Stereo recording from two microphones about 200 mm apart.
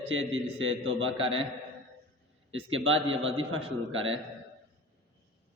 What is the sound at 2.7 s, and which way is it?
A man's voice, 75° right (ahead or behind).